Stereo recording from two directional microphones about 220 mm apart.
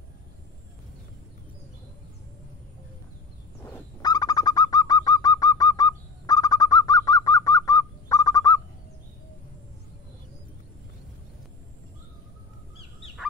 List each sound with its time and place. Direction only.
3.6 s bird: 15° left (ahead or behind)